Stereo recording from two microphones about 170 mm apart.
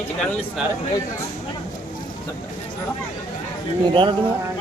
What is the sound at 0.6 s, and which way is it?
Speech, 5° right (ahead or behind).